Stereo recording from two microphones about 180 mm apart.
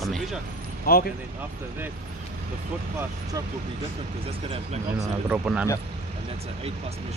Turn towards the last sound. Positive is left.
turn(degrees=-5)  # may be behind; listen again after turning